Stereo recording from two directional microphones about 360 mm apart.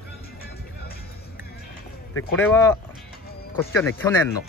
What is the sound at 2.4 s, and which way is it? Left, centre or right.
Speech, centre.